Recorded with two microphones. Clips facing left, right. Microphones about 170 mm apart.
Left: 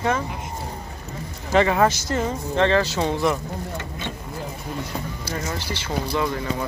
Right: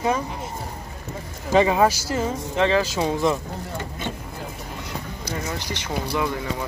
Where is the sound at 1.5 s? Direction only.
15° right (ahead or behind).